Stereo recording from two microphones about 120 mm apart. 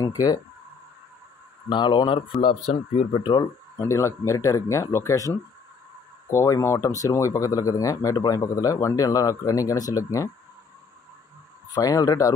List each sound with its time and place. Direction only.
0.0 s speech: 30° left (ahead or behind)
1.7 s speech: 40° left (ahead or behind)
2.4 s speech: 55° left (ahead or behind)
3.2 s speech: 35° left (ahead or behind)
3.8 s speech: 20° left (ahead or behind)
11.7 s speech: 30° left (ahead or behind)